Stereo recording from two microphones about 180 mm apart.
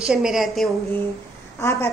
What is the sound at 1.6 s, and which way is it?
Speech, 15° left (ahead or behind).